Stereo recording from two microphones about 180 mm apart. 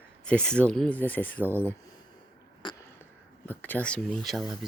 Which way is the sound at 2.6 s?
25° left (ahead or behind).